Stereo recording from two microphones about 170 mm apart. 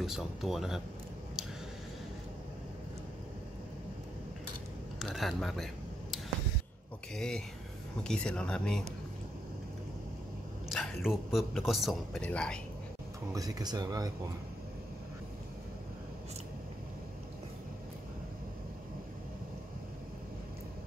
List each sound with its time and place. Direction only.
0.0 s a man's voice: centre (ahead or behind)
4.9 s a man's voice: centre (ahead or behind)
7.2 s a man's voice: 5° left (ahead or behind)
10.7 s a man's voice: centre (ahead or behind)
13.3 s speech: 20° right (ahead or behind)